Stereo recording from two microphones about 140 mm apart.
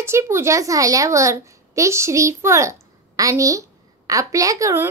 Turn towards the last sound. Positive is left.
turn(degrees=-20)  # may be behind; listen again after turning